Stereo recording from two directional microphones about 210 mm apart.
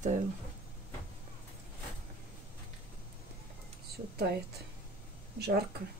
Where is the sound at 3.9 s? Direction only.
50° right (ahead or behind).